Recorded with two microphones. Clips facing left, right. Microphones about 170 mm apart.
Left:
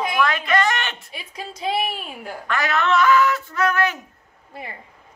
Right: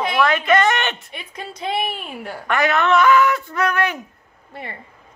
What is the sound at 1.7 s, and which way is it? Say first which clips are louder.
Speech: even; 5° left (ahead or behind).